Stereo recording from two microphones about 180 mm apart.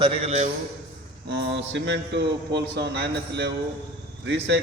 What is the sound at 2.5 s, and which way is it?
Speech, 70° right (ahead or behind).